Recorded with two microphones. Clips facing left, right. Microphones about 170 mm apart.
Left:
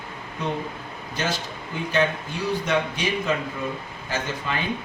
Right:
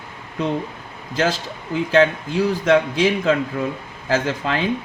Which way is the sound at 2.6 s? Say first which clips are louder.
Right 11 dB; 90° right.